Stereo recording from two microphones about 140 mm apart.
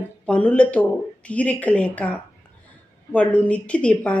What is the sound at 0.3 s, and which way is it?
Speech, 10° left (ahead or behind).